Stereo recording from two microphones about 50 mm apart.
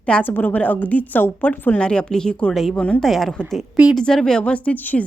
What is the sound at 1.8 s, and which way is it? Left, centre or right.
Speech, centre.